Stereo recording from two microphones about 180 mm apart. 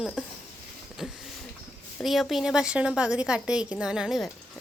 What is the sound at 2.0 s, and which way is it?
A woman's voice, centre (ahead or behind).